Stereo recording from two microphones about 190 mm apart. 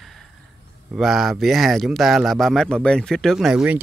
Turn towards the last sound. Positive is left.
turn(degrees=-5)  # may be behind; listen again after turning